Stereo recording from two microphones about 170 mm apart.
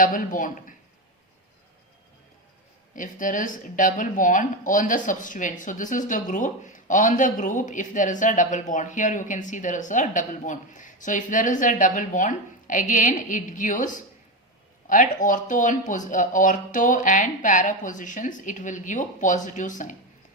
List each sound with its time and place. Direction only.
0.0 s speech: 50° left (ahead or behind)
2.9 s speech: 50° left (ahead or behind)